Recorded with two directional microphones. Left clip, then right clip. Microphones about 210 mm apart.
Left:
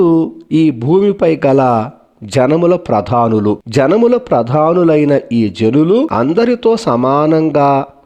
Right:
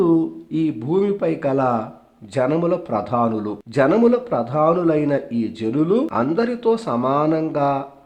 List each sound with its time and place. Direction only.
0.0 s speech: 35° left (ahead or behind)